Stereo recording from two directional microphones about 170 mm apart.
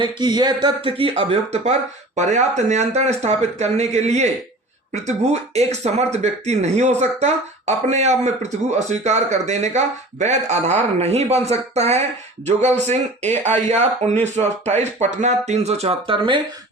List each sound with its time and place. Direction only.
0.0 s speech: 25° right (ahead or behind)